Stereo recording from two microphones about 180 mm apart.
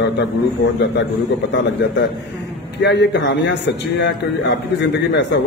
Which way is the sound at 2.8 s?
75° left (ahead or behind).